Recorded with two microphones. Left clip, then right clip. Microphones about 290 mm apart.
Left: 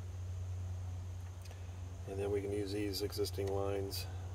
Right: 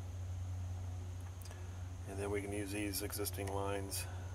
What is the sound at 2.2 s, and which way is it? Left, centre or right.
Speech, centre.